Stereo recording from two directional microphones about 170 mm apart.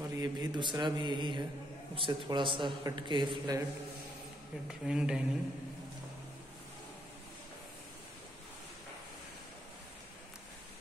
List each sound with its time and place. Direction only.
0.1 s a man's voice: 20° right (ahead or behind)
4.6 s speech: 5° right (ahead or behind)